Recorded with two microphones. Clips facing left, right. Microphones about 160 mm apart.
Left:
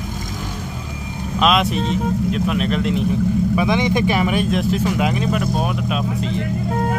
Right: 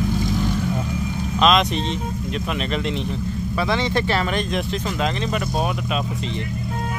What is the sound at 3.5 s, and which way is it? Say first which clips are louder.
Speech: left 4 dB; 15° left (ahead or behind).